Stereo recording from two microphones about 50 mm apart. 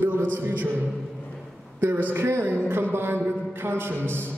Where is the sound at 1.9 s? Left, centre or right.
Right.